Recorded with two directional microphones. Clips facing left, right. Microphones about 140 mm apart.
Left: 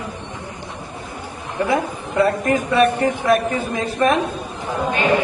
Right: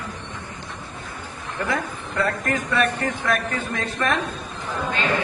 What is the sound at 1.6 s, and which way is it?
A man's voice, 20° left (ahead or behind).